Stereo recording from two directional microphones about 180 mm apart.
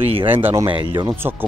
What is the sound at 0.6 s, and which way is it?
Speech, 25° right (ahead or behind).